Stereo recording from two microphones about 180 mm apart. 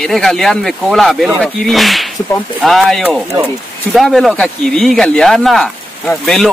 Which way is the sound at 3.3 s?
15° right (ahead or behind).